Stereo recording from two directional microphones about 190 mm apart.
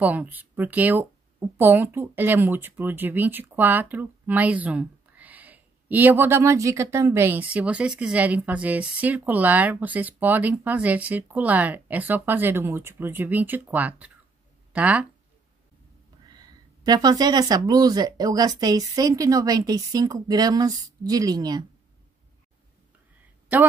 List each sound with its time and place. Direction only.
0.0 s speech: 10° right (ahead or behind)
16.3 s speech: 20° right (ahead or behind)